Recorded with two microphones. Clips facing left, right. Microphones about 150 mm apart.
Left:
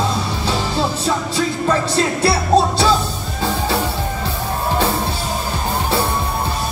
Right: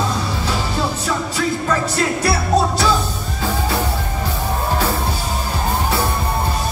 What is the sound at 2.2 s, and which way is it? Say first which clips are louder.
Music: left 3 dB; 30° left (ahead or behind).